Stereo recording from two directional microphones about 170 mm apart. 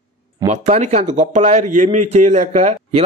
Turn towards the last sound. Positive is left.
turn(degrees=-40)  # may be behind; listen again after turning